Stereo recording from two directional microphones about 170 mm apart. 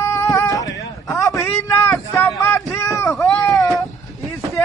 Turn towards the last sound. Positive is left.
turn(degrees=0)  # may be behind; listen again after turning